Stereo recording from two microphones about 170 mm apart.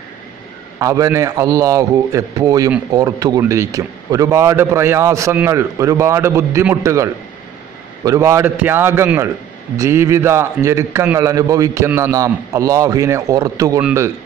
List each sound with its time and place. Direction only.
0.7 s a man's voice: 20° right (ahead or behind)